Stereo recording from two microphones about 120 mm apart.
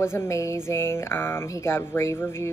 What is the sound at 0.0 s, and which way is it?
A woman's voice, 20° left (ahead or behind).